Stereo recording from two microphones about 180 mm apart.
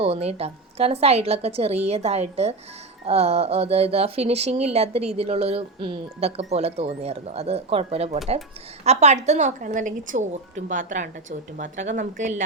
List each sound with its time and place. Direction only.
0.0 s a woman's voice: 35° right (ahead or behind)